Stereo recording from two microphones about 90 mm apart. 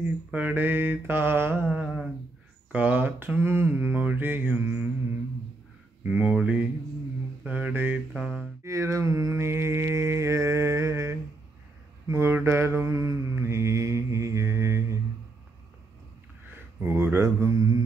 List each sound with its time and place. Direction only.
0.3 s mantra: 20° right (ahead or behind)
2.7 s mantra: 15° right (ahead or behind)
6.0 s mantra: 10° right (ahead or behind)
8.6 s mantra: 35° right (ahead or behind)
16.5 s speech: 25° right (ahead or behind); by 17.8 s 45° right (ahead or behind)